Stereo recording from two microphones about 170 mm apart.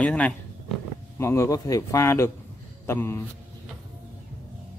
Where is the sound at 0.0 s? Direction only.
10° left (ahead or behind).